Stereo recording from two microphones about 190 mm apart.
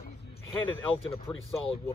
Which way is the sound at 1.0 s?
30° left (ahead or behind).